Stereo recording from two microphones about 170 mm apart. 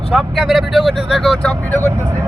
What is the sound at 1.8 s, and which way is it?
Speech, 15° right (ahead or behind).